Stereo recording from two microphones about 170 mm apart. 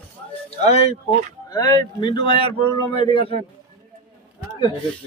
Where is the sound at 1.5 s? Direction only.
20° left (ahead or behind).